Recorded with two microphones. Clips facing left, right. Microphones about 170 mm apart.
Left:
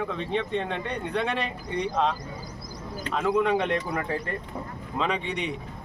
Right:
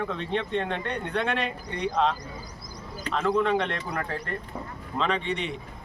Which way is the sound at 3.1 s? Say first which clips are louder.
Even; 10° left (ahead or behind).